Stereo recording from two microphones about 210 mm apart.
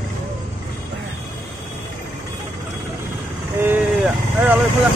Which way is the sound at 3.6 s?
10° right (ahead or behind).